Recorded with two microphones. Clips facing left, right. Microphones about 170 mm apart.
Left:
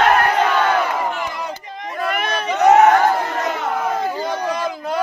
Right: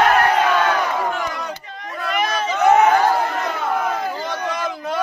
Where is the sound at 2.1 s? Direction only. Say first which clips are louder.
Right 5 dB; 60° left (ahead or behind).